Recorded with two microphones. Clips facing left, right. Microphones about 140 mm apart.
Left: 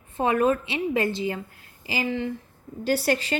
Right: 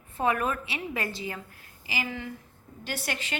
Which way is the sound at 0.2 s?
25° left (ahead or behind).